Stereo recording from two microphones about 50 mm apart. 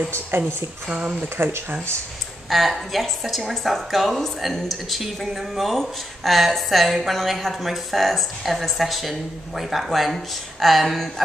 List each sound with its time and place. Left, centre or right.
0.4 s a woman's voice: right
1.4 s speech: right
2.5 s a woman's voice: centre